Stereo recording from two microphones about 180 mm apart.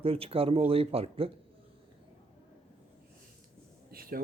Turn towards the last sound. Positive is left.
turn(degrees=-55)  # may be behind; listen again after turning